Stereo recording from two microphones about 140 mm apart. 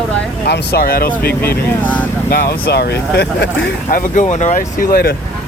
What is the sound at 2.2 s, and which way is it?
Speech, 90° left.